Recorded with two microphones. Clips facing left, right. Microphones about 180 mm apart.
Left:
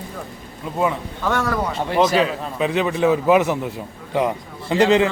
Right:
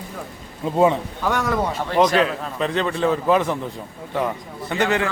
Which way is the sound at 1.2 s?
15° right (ahead or behind).